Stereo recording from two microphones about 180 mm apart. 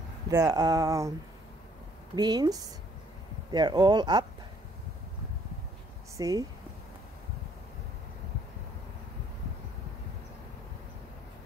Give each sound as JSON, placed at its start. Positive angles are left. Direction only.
{"t": 0.3, "sound": "speech", "side_deg": -20}
{"t": 2.1, "sound": "speech", "side_deg": -25}
{"t": 6.1, "sound": "speech", "side_deg": -20}